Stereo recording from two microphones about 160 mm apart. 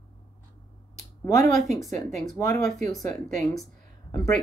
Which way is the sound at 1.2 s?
20° left (ahead or behind).